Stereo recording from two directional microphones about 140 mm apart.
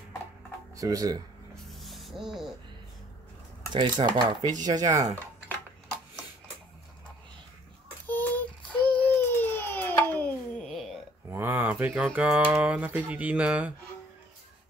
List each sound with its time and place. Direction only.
0.7 s speech: 25° right (ahead or behind)
1.5 s music: centre (ahead or behind)
3.7 s speech: 30° right (ahead or behind)
8.1 s child singing: 10° left (ahead or behind)
8.9 s a sound: 15° left (ahead or behind)
11.2 s speech: 15° right (ahead or behind)